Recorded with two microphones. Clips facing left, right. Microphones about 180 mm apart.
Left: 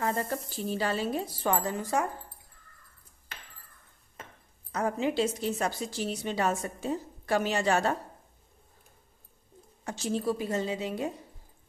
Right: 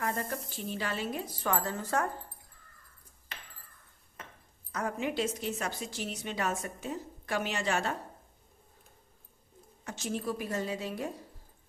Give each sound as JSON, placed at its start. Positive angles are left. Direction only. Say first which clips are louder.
{"t": 0.5, "sound": "a woman's voice", "louder": "left 5 dB", "side_deg": 35}
{"t": 1.5, "sound": "speech", "louder": "left 3 dB", "side_deg": 15}
{"t": 4.7, "sound": "a woman's voice", "louder": "left 5 dB", "side_deg": 30}
{"t": 9.8, "sound": "a woman's voice", "louder": "left 5 dB", "side_deg": 30}